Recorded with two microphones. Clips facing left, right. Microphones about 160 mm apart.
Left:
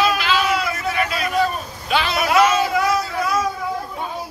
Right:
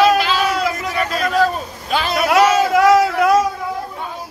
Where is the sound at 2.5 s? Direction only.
90° right.